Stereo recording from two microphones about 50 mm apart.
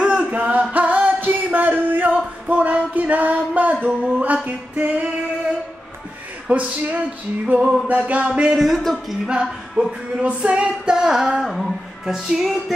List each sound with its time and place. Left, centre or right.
0.0 s music: right
6.5 s music: right
7.6 s a man's voice: centre
8.1 s music: right
8.6 s a man's voice: centre
9.3 s female singing: centre
11.4 s a man's voice: centre
12.1 s female singing: centre